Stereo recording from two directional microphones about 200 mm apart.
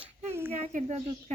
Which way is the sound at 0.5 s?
35° right (ahead or behind).